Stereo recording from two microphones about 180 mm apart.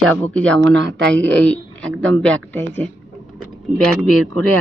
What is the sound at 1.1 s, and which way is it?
Speech, 5° left (ahead or behind).